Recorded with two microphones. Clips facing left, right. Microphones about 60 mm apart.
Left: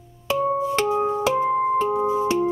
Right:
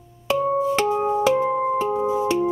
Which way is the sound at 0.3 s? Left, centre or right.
Centre.